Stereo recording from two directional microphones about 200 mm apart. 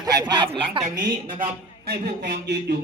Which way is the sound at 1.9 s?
50° right (ahead or behind).